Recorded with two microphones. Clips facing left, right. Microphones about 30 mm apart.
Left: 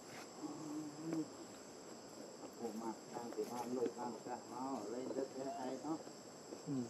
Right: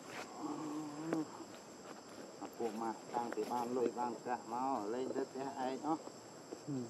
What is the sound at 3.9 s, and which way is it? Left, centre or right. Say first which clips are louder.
Speech: right 6 dB; right.